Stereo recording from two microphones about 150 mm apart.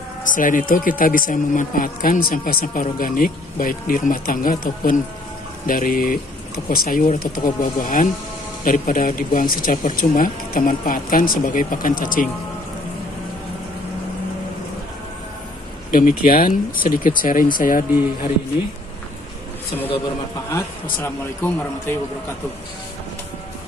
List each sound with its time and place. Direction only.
0.2 s speech: 60° left (ahead or behind)
15.9 s speech: 65° left (ahead or behind)
21.0 s a man's voice: 15° left (ahead or behind)